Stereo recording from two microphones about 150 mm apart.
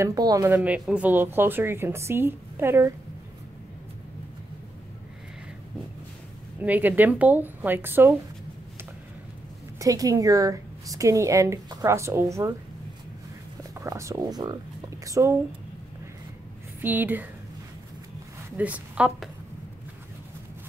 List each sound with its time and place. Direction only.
0.0 s a woman's voice: 25° right (ahead or behind)
0.6 s a woman's voice: 5° right (ahead or behind)
6.6 s a woman's voice: 10° right (ahead or behind)
9.8 s a woman's voice: 20° right (ahead or behind)
13.7 s a woman's voice: 20° right (ahead or behind)
16.8 s a woman's voice: 10° right (ahead or behind)
18.6 s a woman's voice: 10° right (ahead or behind)